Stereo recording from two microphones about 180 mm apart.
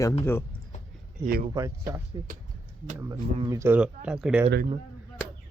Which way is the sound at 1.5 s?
15° right (ahead or behind).